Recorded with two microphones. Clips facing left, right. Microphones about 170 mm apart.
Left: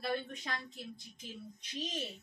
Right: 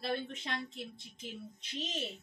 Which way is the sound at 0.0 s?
25° right (ahead or behind).